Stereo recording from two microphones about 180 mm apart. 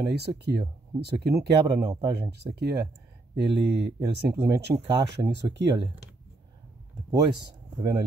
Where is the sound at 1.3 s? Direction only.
20° right (ahead or behind).